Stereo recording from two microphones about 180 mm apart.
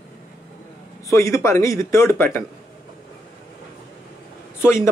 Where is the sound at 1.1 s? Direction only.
15° left (ahead or behind).